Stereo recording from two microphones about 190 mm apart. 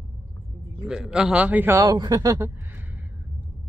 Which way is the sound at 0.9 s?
5° right (ahead or behind).